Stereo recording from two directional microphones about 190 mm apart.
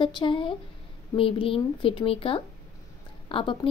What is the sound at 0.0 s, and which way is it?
A woman's voice, 25° left (ahead or behind).